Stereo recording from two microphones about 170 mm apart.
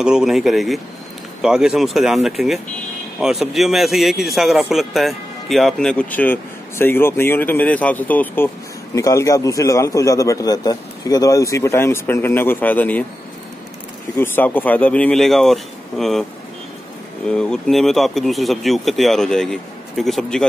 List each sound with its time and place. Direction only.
0.0 s a man's voice: 5° right (ahead or behind)
14.1 s speech: 10° left (ahead or behind)
17.3 s a man's voice: 5° left (ahead or behind)